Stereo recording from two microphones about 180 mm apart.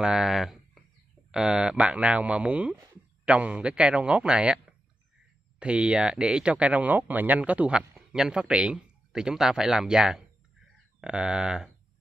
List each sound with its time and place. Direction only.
0.0 s a man's voice: 5° right (ahead or behind)